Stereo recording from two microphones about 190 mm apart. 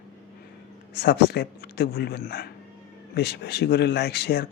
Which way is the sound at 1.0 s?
60° left (ahead or behind).